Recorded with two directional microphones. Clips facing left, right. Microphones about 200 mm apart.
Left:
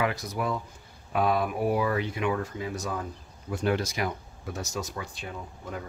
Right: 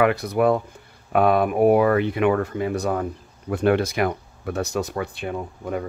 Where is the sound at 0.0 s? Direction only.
60° right (ahead or behind).